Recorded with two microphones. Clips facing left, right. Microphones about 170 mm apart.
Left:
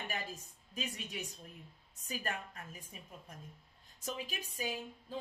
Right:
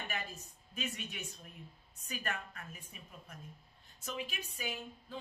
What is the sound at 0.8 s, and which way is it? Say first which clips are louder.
A woman's voice: even; 35° left (ahead or behind).